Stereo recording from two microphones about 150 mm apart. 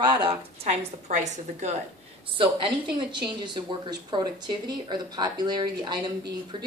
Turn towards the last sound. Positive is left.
turn(degrees=-30)  # may be behind; listen again after turning